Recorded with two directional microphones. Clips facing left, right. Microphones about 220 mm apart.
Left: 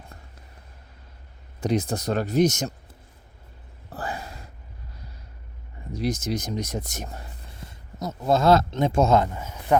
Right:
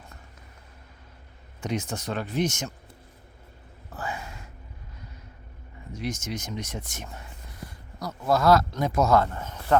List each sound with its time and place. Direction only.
1.6 s speech: 35° left (ahead or behind)
3.8 s gasp: 35° left (ahead or behind)
5.9 s speech: 35° left (ahead or behind)
7.6 s a sound: 20° left (ahead or behind)
8.3 s a man's voice: 25° left (ahead or behind)